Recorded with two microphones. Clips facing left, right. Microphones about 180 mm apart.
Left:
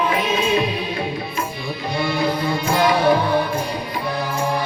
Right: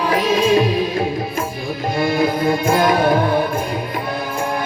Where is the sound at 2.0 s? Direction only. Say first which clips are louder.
Right 3 dB; 50° right (ahead or behind).